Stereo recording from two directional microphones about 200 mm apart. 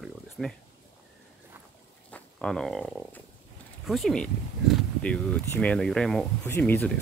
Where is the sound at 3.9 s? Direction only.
Centre (ahead or behind).